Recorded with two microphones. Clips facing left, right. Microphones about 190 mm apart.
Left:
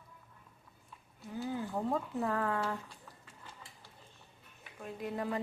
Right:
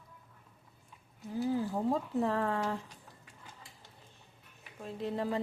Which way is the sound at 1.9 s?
25° right (ahead or behind).